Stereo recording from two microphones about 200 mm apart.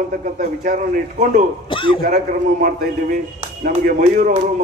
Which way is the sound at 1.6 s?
25° left (ahead or behind).